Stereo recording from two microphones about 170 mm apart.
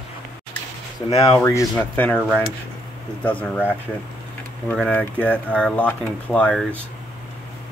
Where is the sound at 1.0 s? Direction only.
25° left (ahead or behind).